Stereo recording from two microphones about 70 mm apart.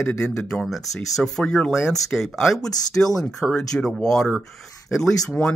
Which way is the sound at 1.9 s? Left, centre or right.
Centre.